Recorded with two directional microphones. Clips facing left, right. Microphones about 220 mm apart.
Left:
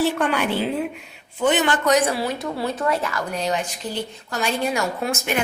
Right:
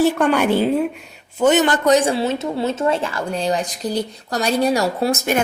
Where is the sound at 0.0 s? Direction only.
45° right (ahead or behind).